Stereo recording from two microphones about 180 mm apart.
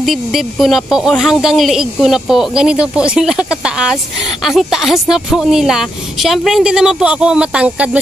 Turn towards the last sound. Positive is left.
turn(degrees=-5)  # may be behind; listen again after turning